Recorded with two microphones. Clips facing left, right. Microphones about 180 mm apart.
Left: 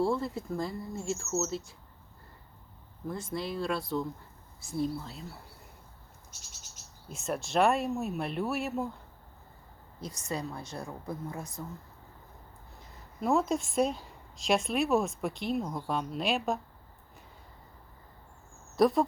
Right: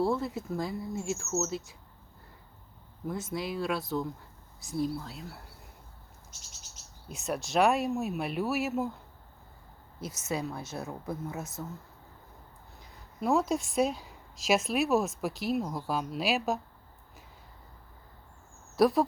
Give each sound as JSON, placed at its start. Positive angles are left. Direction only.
{"t": 0.0, "sound": "a woman's voice", "side_deg": 0}
{"t": 3.1, "sound": "a woman's voice", "side_deg": -5}
{"t": 7.1, "sound": "a woman's voice", "side_deg": 0}
{"t": 10.0, "sound": "a woman's voice", "side_deg": -5}
{"t": 12.8, "sound": "a woman's voice", "side_deg": 0}
{"t": 18.8, "sound": "a woman's voice", "side_deg": 0}